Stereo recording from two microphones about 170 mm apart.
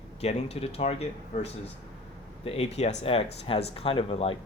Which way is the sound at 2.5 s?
35° left (ahead or behind).